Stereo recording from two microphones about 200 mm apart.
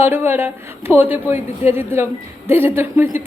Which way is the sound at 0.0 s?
10° right (ahead or behind).